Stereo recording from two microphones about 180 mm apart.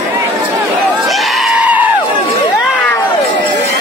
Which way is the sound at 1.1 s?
Centre (ahead or behind).